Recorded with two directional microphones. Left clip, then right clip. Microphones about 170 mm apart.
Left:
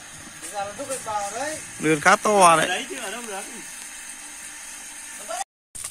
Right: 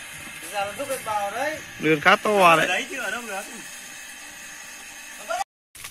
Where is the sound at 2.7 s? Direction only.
20° right (ahead or behind).